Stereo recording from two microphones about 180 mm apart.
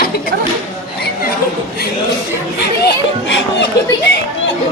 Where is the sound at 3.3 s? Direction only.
80° left.